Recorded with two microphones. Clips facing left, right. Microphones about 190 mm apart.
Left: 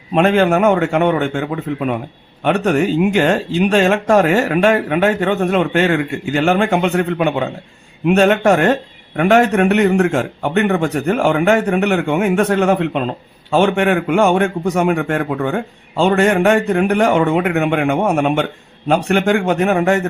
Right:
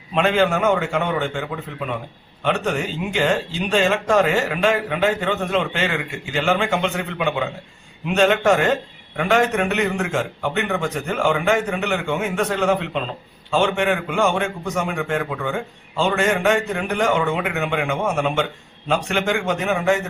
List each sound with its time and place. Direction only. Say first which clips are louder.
0.1 s a man's voice: left 5 dB; 55° left (ahead or behind)